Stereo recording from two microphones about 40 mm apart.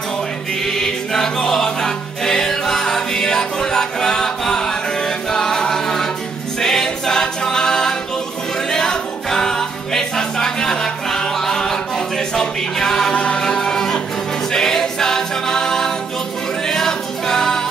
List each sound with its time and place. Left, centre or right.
0.7 s music: centre
6.6 s a capella: centre
8.6 s music: centre
12.4 s a sound: centre
13.1 s music: left
13.4 s music: centre
14.5 s a capella: centre
16.6 s music: centre